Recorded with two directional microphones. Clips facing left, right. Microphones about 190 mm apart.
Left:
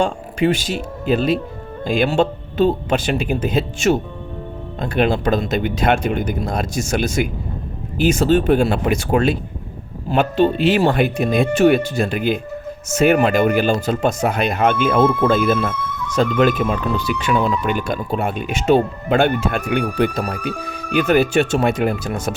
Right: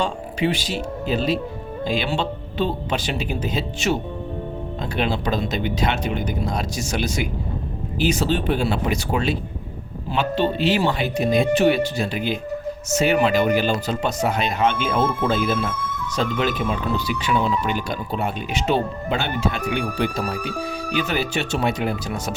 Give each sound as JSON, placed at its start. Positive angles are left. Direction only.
{"t": 0.0, "sound": "speech", "side_deg": 50}